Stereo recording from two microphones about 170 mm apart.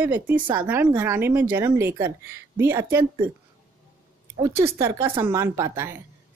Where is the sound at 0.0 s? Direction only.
10° right (ahead or behind).